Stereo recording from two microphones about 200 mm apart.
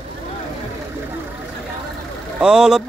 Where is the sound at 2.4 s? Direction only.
5° right (ahead or behind).